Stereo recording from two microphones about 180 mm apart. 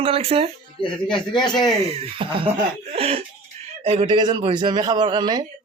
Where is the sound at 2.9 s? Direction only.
35° right (ahead or behind).